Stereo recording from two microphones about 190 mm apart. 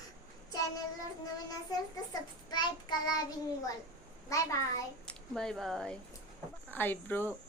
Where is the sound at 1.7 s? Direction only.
20° left (ahead or behind).